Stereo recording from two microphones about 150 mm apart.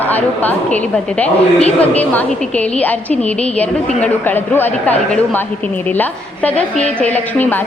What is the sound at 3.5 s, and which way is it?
A woman's voice, 10° left (ahead or behind).